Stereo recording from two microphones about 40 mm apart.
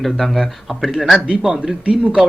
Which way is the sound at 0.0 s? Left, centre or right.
Centre.